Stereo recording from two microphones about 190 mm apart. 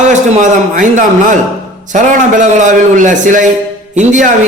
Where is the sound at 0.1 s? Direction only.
40° right (ahead or behind).